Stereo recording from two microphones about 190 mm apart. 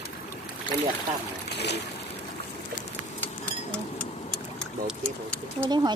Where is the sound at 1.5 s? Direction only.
60° left (ahead or behind).